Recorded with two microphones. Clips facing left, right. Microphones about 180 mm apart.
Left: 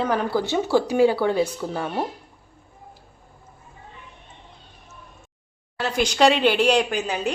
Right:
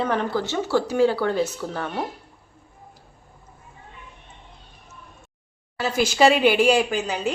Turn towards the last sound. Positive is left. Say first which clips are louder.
# even
turn(degrees=0)  # may be behind; listen again after turning